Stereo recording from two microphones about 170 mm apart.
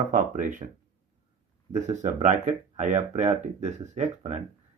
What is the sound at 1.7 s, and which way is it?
Speech, 40° right (ahead or behind).